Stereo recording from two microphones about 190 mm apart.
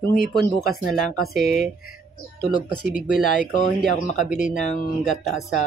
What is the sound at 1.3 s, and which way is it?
Speech, centre (ahead or behind).